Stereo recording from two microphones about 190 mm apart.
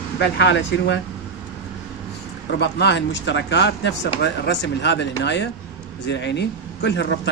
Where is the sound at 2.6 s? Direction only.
65° left (ahead or behind).